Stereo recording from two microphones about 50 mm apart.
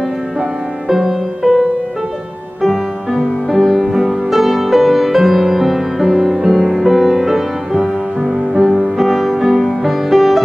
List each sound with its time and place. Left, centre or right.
0.4 s music: centre
2.6 s music: centre